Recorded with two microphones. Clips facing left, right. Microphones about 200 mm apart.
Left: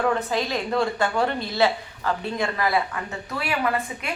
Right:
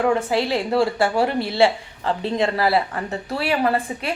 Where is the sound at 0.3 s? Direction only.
10° right (ahead or behind).